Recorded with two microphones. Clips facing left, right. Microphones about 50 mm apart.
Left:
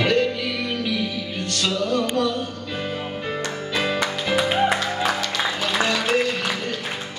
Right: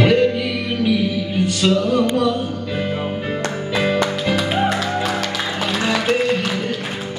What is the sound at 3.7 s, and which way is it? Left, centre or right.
Music, centre.